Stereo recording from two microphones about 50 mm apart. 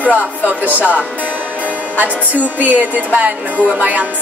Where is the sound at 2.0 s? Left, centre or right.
Right.